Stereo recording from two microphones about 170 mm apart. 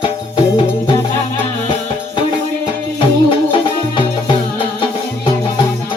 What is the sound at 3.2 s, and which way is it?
Music, 30° left (ahead or behind).